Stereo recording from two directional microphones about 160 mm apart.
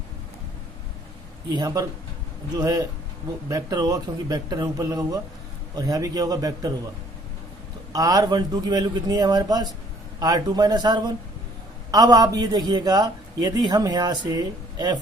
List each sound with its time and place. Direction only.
1.5 s a man's voice: 25° right (ahead or behind)
7.9 s a man's voice: 20° right (ahead or behind)